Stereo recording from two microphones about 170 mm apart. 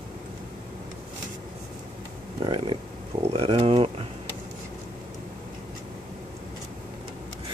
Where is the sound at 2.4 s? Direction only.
30° right (ahead or behind).